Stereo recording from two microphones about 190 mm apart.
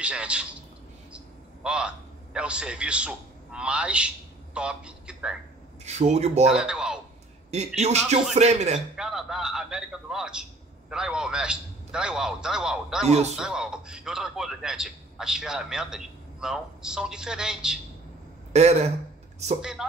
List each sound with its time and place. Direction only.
0.0 s a man's voice: 5° right (ahead or behind)
5.9 s a man's voice: 35° right (ahead or behind)
6.5 s a man's voice: 5° right (ahead or behind)
7.5 s a man's voice: 35° right (ahead or behind)
8.7 s a man's voice: 5° right (ahead or behind)
13.1 s a man's voice: 35° right (ahead or behind)
13.4 s a man's voice: 5° right (ahead or behind)
18.5 s a man's voice: 35° right (ahead or behind)
19.6 s a man's voice: 5° right (ahead or behind)